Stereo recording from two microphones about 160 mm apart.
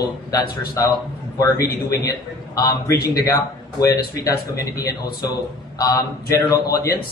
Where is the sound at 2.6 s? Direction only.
20° left (ahead or behind).